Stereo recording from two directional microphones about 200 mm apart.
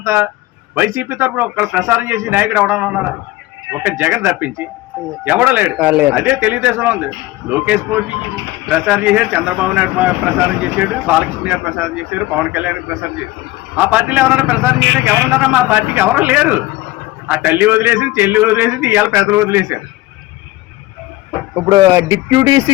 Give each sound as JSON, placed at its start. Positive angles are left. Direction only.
{"t": 0.0, "sound": "a man's voice", "side_deg": -15}
{"t": 13.7, "sound": "a man's voice", "side_deg": -5}
{"t": 21.5, "sound": "a man's voice", "side_deg": -20}